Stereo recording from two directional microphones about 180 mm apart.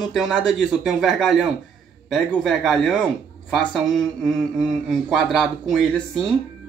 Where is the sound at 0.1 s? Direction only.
5° right (ahead or behind).